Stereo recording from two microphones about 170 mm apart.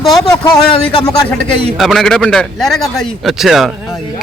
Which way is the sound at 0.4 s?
25° left (ahead or behind).